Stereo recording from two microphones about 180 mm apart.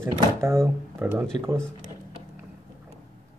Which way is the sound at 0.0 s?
15° right (ahead or behind).